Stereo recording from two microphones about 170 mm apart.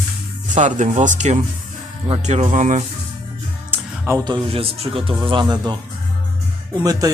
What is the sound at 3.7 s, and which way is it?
A man's voice, 15° right (ahead or behind).